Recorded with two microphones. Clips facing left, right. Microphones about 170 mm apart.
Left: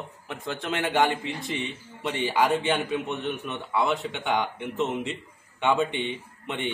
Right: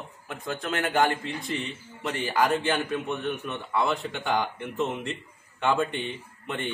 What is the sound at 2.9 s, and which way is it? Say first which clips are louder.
Speech: even; 20° left (ahead or behind).